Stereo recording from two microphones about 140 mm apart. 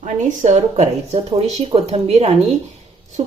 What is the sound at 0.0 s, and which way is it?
A woman's voice, 60° right (ahead or behind).